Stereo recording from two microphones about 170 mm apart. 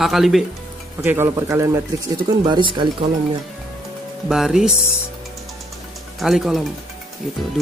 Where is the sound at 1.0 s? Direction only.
15° right (ahead or behind).